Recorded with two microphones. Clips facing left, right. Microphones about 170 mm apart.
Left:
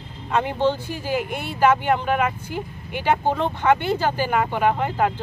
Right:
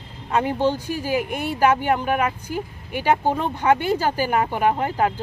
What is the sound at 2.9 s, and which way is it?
Speech, 10° right (ahead or behind).